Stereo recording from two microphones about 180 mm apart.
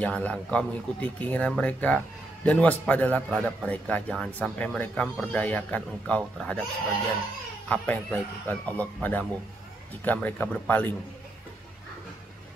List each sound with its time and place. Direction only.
0.0 s speech: 5° left (ahead or behind)
7.6 s speech: 10° left (ahead or behind)